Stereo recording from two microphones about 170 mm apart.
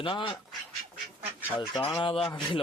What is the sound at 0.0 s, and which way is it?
Speech, 30° left (ahead or behind).